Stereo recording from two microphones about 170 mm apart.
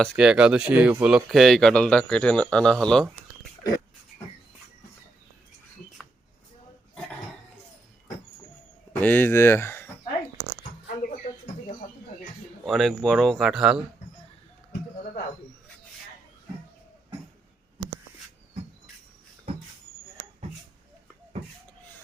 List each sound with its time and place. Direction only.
0.0 s speech: 5° right (ahead or behind)
9.0 s speech: 10° left (ahead or behind)
12.6 s speech: centre (ahead or behind)